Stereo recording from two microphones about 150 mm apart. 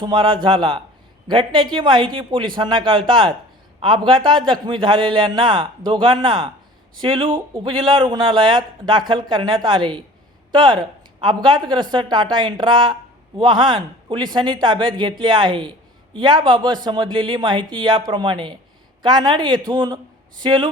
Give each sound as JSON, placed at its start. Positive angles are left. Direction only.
{"t": 0.0, "sound": "a man's voice", "side_deg": -35}